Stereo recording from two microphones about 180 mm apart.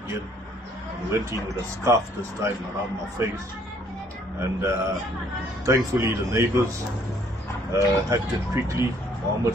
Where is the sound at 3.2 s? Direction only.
15° right (ahead or behind).